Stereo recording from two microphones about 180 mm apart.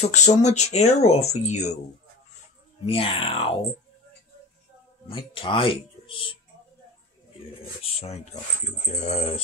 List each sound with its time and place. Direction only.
0.0 s speech: 40° left (ahead or behind)
2.9 s speech: 30° left (ahead or behind)
5.1 s speech: 30° left (ahead or behind)
7.8 s speech: 35° left (ahead or behind)